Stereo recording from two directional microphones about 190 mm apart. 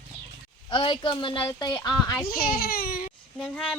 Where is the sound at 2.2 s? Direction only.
50° left (ahead or behind).